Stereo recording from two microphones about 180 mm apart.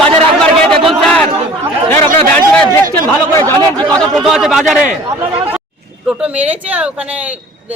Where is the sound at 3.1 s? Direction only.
10° left (ahead or behind).